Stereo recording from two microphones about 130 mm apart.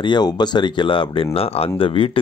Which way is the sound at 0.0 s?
35° left (ahead or behind).